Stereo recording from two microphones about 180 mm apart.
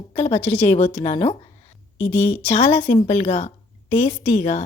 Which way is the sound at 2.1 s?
10° left (ahead or behind).